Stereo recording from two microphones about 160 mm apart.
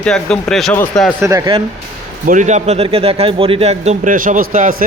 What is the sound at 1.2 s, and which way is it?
Speech, 25° right (ahead or behind).